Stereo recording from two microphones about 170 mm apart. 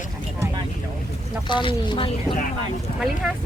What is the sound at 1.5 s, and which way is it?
Speech, 30° left (ahead or behind).